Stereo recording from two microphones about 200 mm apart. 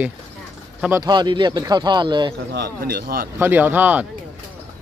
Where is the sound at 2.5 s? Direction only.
50° right (ahead or behind).